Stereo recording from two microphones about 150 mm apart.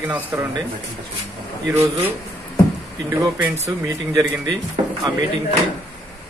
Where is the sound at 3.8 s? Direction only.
15° right (ahead or behind).